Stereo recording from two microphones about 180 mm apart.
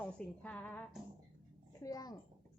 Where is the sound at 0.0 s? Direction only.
5° left (ahead or behind).